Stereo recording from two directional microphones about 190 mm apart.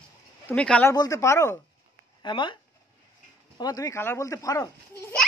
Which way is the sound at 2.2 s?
25° left (ahead or behind).